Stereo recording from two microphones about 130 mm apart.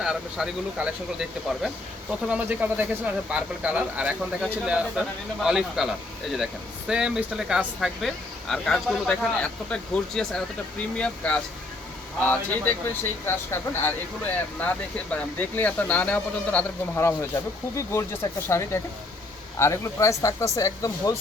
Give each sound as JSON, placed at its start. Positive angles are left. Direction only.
{"t": 0.0, "sound": "speech", "side_deg": -5}